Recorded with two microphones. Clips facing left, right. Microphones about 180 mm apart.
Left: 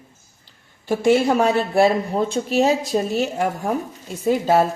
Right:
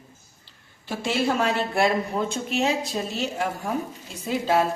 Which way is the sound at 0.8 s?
50° left (ahead or behind).